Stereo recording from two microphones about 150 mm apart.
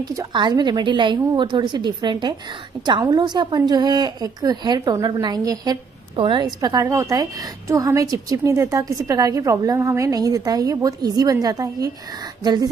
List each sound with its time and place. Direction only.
0.0 s a woman's voice: 25° right (ahead or behind)